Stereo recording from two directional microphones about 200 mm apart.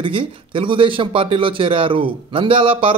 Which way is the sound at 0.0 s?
25° right (ahead or behind).